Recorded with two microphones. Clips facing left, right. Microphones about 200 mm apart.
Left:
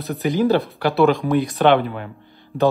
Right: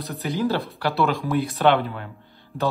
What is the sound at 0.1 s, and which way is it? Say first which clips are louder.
Speech: left 7 dB; 15° left (ahead or behind).